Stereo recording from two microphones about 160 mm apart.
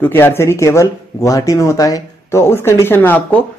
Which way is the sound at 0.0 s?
15° left (ahead or behind).